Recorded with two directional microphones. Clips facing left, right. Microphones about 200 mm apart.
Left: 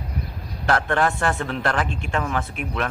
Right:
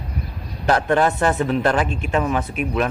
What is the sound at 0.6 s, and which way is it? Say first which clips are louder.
A man's voice: right 4 dB; 20° right (ahead or behind).